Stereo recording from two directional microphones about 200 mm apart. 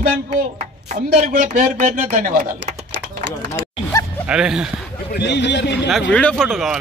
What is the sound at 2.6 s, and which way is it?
Typing, 60° right (ahead or behind).